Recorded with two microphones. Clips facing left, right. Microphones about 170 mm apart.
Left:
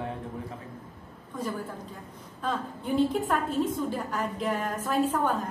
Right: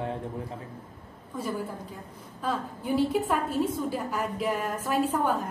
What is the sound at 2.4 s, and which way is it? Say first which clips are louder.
A woman's voice: right 1 dB; 5° right (ahead or behind).